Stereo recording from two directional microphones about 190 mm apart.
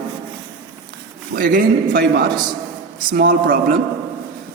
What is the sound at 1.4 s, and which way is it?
A man's voice, 50° right (ahead or behind).